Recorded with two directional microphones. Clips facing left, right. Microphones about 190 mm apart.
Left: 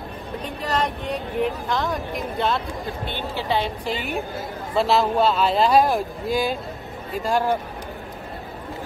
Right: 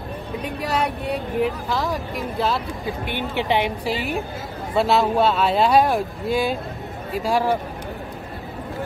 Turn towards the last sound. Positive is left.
turn(degrees=0)  # may be behind; listen again after turning